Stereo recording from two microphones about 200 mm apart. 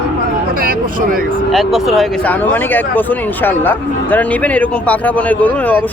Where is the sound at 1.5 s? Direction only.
Centre (ahead or behind).